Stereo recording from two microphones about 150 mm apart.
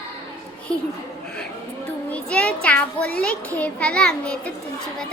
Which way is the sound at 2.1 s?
5° left (ahead or behind).